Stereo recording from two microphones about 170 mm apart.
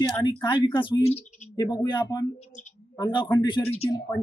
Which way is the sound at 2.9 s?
30° left (ahead or behind).